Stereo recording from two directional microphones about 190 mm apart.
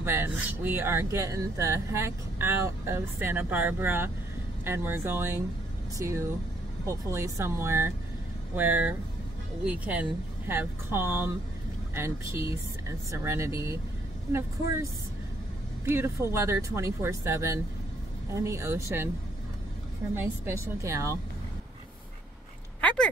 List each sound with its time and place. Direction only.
0.0 s speech: 10° right (ahead or behind)
15.8 s speech: 10° right (ahead or behind)
20.2 s speech: 15° right (ahead or behind)
22.8 s speech: 5° left (ahead or behind)